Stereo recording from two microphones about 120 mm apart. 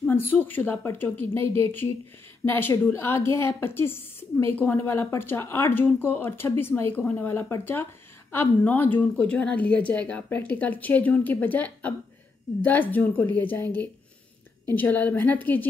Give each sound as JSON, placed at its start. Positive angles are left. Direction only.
{"t": 0.0, "sound": "a woman's voice", "side_deg": 15}